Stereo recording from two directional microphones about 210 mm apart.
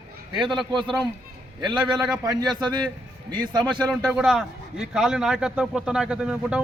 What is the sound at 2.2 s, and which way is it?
Speech, 20° right (ahead or behind).